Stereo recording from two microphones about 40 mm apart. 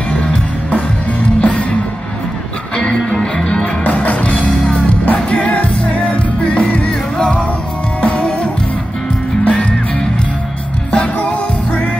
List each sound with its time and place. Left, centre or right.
1.4 s music: left
2.8 s music: left
3.8 s music: left
9.5 s music: left
11.1 s music: left